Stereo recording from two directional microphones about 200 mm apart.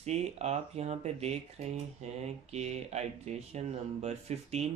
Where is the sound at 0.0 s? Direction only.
35° right (ahead or behind).